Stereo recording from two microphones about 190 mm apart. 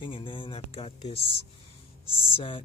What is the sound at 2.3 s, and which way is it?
Speech, 30° left (ahead or behind).